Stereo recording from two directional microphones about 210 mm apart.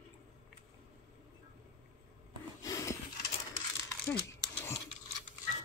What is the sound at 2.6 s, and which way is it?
Snort, 15° left (ahead or behind).